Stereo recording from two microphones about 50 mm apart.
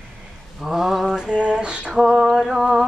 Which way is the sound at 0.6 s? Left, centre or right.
Centre.